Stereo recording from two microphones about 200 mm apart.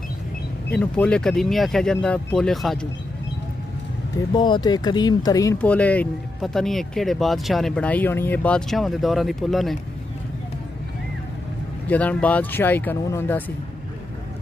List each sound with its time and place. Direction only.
0.7 s speech: 5° left (ahead or behind)
4.3 s speech: 20° left (ahead or behind); by 9.8 s centre (ahead or behind)
11.9 s speech: 5° left (ahead or behind)